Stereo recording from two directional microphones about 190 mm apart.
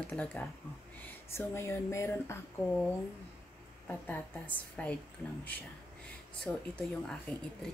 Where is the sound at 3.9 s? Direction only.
10° left (ahead or behind).